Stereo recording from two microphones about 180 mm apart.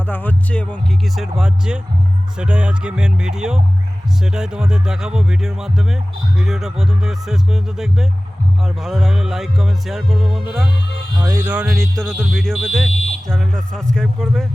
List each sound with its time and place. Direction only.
0.1 s music: 10° left (ahead or behind)
11.2 s music: 25° right (ahead or behind)
11.4 s music: 5° right (ahead or behind)